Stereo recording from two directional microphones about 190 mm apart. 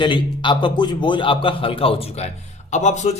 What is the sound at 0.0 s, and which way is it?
A man's voice, 25° left (ahead or behind).